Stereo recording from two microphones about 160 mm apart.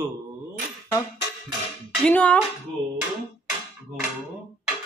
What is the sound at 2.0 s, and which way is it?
Speech, 10° left (ahead or behind).